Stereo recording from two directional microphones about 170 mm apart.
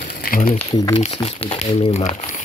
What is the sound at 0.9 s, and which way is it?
Speech, 35° left (ahead or behind).